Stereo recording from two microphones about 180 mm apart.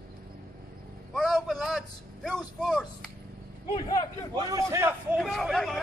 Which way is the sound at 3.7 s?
25° left (ahead or behind).